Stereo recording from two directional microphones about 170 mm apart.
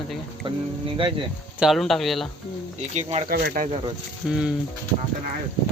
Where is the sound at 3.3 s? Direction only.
60° right (ahead or behind).